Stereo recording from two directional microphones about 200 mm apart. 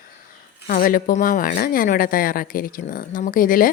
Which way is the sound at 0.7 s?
45° left (ahead or behind).